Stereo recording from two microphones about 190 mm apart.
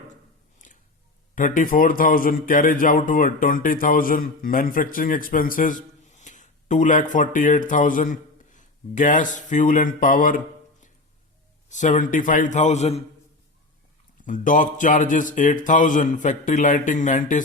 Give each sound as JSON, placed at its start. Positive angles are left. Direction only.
{"t": 0.6, "sound": "a sound", "side_deg": 40}
{"t": 1.4, "sound": "a man's voice", "side_deg": 45}
{"t": 14.3, "sound": "a man's voice", "side_deg": 40}